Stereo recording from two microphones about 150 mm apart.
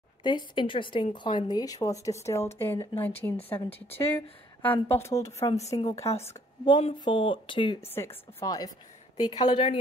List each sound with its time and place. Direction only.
0.2 s a woman's voice: 30° left (ahead or behind)
5.7 s speech: 30° left (ahead or behind)
6.1 s a woman's voice: 15° left (ahead or behind)
6.6 s speech: 35° left (ahead or behind)
7.8 s speech: 15° left (ahead or behind)
9.4 s speech: 35° left (ahead or behind)